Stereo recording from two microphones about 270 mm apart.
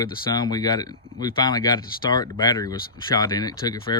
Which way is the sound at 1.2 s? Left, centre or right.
Centre.